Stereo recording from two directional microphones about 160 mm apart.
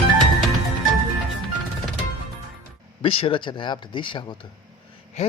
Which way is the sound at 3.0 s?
35° left (ahead or behind).